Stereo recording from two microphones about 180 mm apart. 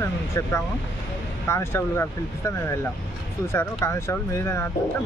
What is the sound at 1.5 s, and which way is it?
Speech, 15° left (ahead or behind).